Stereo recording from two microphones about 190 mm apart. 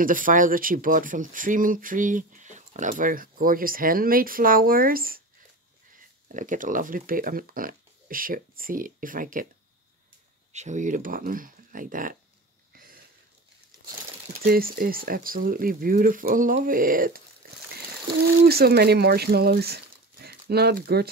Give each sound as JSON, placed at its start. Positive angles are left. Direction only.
{"t": 0.0, "sound": "speech", "side_deg": -45}
{"t": 10.5, "sound": "speech", "side_deg": -40}
{"t": 12.7, "sound": "a sound", "side_deg": -50}
{"t": 14.4, "sound": "speech", "side_deg": -50}
{"t": 18.4, "sound": "speech", "side_deg": -55}